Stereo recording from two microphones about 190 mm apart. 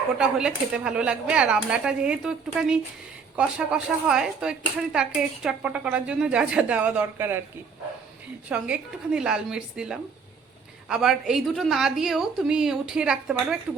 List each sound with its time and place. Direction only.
0.2 s speech: 5° right (ahead or behind)
8.4 s speech: 5° right (ahead or behind)